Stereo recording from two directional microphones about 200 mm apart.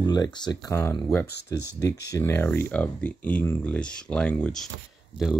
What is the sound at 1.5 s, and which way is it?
Speech, 15° left (ahead or behind).